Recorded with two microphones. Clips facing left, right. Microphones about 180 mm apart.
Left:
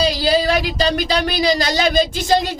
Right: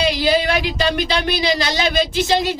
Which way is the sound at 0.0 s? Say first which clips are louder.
Left 1 dB; 35° left (ahead or behind).